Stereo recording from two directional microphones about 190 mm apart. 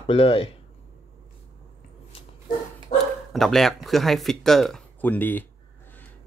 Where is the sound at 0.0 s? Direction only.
30° left (ahead or behind).